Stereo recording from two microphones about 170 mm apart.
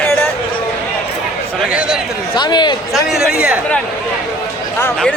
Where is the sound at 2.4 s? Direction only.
25° left (ahead or behind).